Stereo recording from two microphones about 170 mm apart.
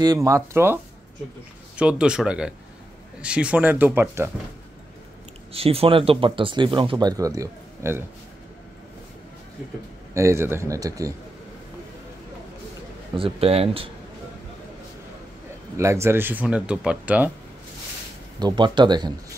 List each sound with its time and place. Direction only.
0.0 s speech: 20° right (ahead or behind)
1.8 s speech: 5° right (ahead or behind)
5.5 s speech: 35° right (ahead or behind); by 8.0 s 15° right (ahead or behind)
10.1 s speech: 15° right (ahead or behind)
13.1 s a man's voice: 35° right (ahead or behind)
15.8 s speech: 15° right (ahead or behind)
18.4 s speech: 25° right (ahead or behind)